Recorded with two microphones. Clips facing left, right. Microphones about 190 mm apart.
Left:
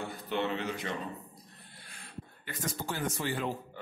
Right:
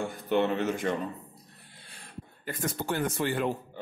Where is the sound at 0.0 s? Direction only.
50° right (ahead or behind).